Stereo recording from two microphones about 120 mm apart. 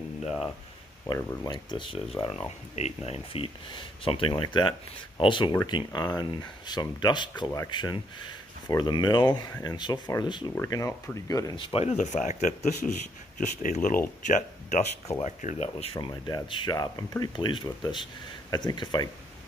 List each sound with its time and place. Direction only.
1.0 s speech: 35° left (ahead or behind)
2.2 s speech: 55° left (ahead or behind)
10.7 s speech: 25° left (ahead or behind)
11.5 s speech: 50° left (ahead or behind); by 14.8 s 90° left
15.2 s speech: 75° left (ahead or behind); by 19.0 s 35° left (ahead or behind)